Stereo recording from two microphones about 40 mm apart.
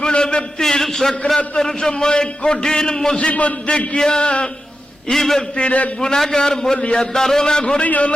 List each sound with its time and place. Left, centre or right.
0.0 s a man's voice: left
3.2 s a man's voice: left
3.9 s a man's voice: left
5.1 s a man's voice: centre
5.5 s a man's voice: left
6.0 s a man's voice: centre
7.8 s a man's voice: left